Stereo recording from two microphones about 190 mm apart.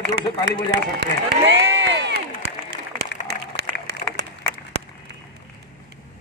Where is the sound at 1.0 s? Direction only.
65° right (ahead or behind).